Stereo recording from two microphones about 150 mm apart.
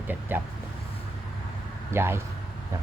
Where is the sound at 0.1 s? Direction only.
10° right (ahead or behind).